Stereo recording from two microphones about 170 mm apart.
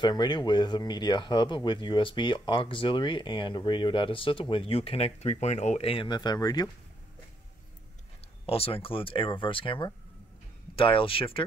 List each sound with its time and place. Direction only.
0.0 s speech: 25° left (ahead or behind)
8.5 s speech: 35° left (ahead or behind)